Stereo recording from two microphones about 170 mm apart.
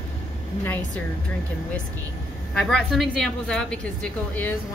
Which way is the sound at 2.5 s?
Centre (ahead or behind).